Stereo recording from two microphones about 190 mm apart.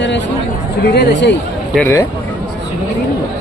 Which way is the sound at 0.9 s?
60° left (ahead or behind).